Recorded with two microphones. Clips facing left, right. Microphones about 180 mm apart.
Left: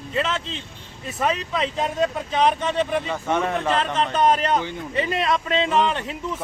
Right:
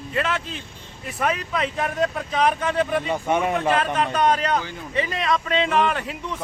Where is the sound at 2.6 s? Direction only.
25° left (ahead or behind).